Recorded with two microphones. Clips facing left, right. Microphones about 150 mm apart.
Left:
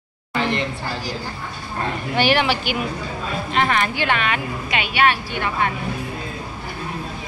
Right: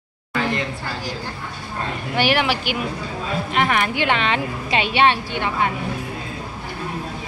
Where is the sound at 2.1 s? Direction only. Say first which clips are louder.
Left 1 dB; centre (ahead or behind).